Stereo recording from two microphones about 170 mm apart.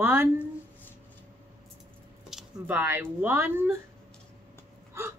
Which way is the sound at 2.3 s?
5° right (ahead or behind).